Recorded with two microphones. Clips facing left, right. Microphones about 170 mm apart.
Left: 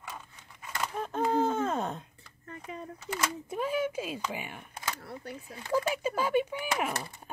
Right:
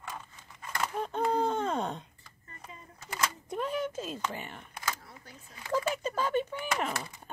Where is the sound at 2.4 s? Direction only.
75° left (ahead or behind).